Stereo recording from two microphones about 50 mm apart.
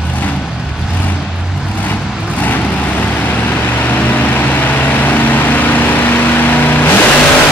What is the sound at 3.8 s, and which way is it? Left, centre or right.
Vehicle, left.